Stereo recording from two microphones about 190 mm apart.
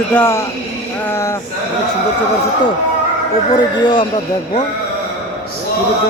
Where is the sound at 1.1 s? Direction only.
15° left (ahead or behind).